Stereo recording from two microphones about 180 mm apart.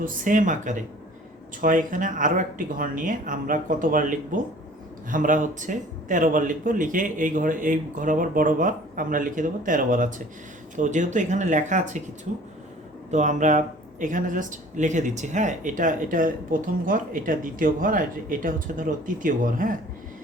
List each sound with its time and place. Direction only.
0.0 s speech: 50° right (ahead or behind)
13.1 s speech: 40° right (ahead or behind)